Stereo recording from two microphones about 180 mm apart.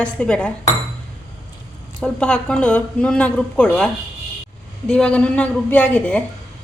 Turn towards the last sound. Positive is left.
turn(degrees=10)  # may be behind; listen again after turning